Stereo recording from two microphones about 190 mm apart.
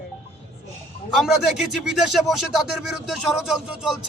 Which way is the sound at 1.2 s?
Centre (ahead or behind).